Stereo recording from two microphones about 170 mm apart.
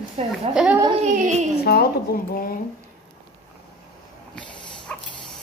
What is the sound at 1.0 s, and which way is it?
Speech, 45° right (ahead or behind).